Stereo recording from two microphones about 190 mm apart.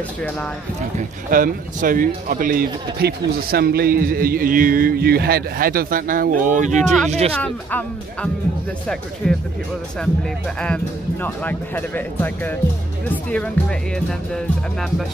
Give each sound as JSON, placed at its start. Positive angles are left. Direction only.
{"t": 0.9, "sound": "speech", "side_deg": -45}
{"t": 7.3, "sound": "speech", "side_deg": 5}
{"t": 10.6, "sound": "speech", "side_deg": 10}